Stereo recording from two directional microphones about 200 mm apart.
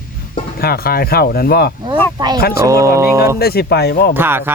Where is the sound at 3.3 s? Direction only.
50° left (ahead or behind).